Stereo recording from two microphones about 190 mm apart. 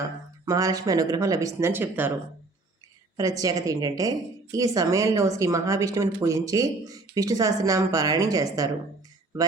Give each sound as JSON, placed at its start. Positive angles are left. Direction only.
{"t": 0.4, "sound": "speech", "side_deg": -15}
{"t": 3.2, "sound": "speech", "side_deg": -20}